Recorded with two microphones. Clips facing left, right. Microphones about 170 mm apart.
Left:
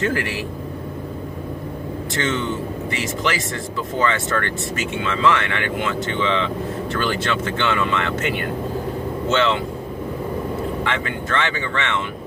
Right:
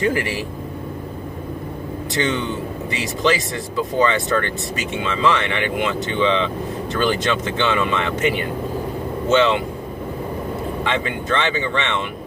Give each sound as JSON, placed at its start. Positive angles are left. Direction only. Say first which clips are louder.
{"t": 0.0, "sound": "speech", "louder": "right 2 dB", "side_deg": -15}
{"t": 2.1, "sound": "speech", "louder": "right 1 dB", "side_deg": -15}
{"t": 10.8, "sound": "speech", "louder": "right 2 dB", "side_deg": -20}